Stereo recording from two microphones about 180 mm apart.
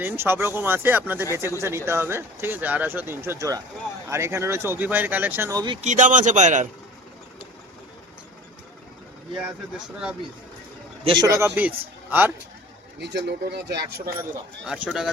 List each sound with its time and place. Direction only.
0.0 s speech: 10° right (ahead or behind)
5.8 s a man's voice: 40° right (ahead or behind)
9.3 s speech: 5° right (ahead or behind)
11.0 s speech: 25° right (ahead or behind)
13.0 s speech: 70° right (ahead or behind)
14.7 s speech: 5° right (ahead or behind)